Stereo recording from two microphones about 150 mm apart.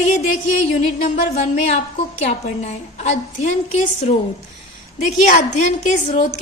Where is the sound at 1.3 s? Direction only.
45° left (ahead or behind).